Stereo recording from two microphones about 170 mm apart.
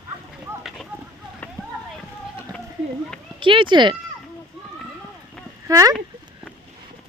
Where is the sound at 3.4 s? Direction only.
30° right (ahead or behind).